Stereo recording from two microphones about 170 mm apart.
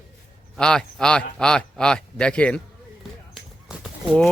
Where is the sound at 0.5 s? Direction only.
5° left (ahead or behind).